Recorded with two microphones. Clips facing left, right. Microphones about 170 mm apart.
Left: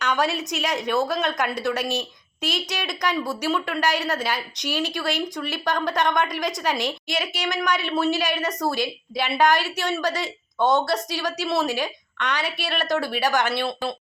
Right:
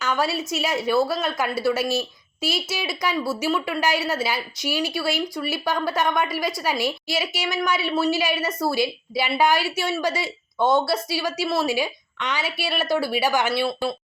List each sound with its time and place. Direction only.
0.0 s a woman's voice: 5° right (ahead or behind)